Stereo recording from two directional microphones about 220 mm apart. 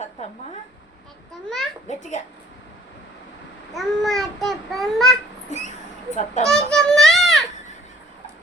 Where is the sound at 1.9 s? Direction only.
30° left (ahead or behind).